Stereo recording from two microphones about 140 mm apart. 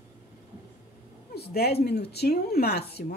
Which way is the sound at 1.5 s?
90° left.